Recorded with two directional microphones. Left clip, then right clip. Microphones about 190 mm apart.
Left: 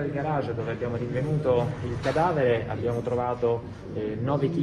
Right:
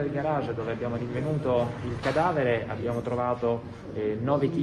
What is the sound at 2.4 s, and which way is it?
A man's voice, 15° right (ahead or behind).